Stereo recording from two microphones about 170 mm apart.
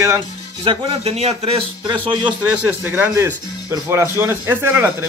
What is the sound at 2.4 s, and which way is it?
Speech, 10° right (ahead or behind).